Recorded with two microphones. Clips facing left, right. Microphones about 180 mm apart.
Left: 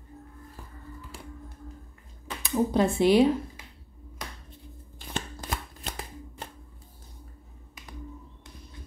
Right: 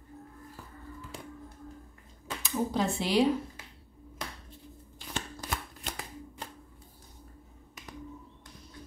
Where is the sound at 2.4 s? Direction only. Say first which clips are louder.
Left 6 dB; 55° left (ahead or behind).